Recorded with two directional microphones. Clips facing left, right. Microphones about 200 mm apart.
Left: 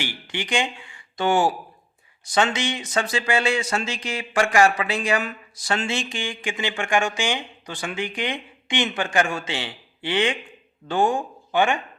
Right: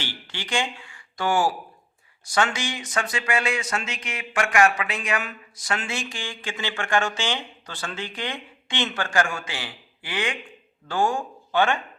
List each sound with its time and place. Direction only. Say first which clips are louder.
0.0 s speech: left 5 dB; 15° left (ahead or behind)